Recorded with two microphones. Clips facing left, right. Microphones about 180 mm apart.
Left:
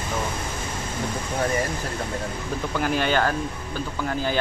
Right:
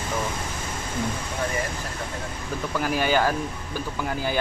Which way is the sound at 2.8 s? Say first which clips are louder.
Even; 5° right (ahead or behind).